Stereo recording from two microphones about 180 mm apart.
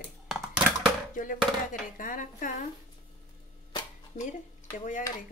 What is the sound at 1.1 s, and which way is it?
A woman's voice, 50° left (ahead or behind).